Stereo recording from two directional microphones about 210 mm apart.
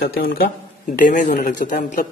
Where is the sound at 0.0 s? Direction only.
50° left (ahead or behind).